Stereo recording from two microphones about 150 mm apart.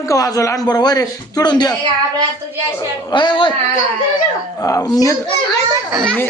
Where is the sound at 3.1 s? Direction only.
30° left (ahead or behind).